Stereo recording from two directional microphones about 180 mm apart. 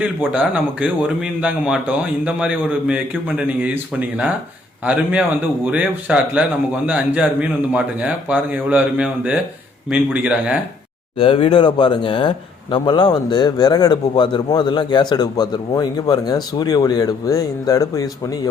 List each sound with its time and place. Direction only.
0.0 s a man's voice: 10° right (ahead or behind)
5.7 s a man's voice: 5° right (ahead or behind)
11.2 s speech: 30° left (ahead or behind)